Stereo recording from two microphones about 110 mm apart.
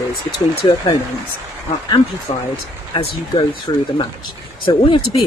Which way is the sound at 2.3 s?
50° left (ahead or behind).